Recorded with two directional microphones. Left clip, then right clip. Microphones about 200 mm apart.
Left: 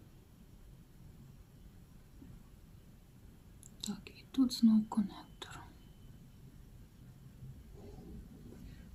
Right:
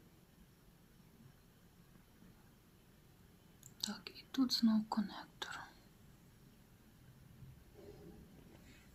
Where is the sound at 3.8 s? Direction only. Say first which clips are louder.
Right 1 dB; centre (ahead or behind).